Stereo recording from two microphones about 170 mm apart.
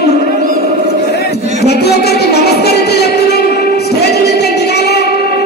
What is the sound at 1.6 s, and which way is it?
Music, 70° left (ahead or behind).